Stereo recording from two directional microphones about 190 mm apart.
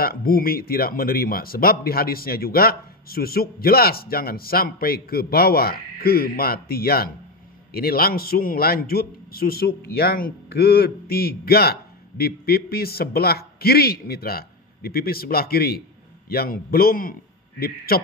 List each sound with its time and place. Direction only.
0.0 s a man's voice: 50° left (ahead or behind)